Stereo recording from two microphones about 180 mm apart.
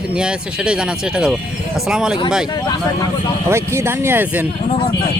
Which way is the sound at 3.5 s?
15° right (ahead or behind).